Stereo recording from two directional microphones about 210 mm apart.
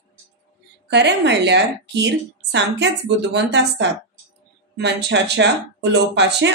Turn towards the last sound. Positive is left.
turn(degrees=-55)  # may be behind; listen again after turning